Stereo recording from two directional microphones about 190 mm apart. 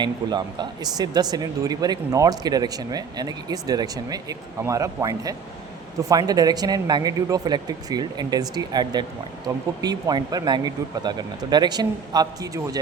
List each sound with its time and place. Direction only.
0.0 s speech: 20° right (ahead or behind)